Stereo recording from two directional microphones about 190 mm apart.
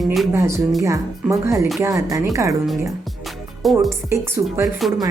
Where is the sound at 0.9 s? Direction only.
15° right (ahead or behind).